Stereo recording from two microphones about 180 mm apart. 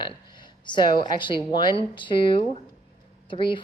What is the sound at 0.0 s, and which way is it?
A woman's voice, 25° left (ahead or behind).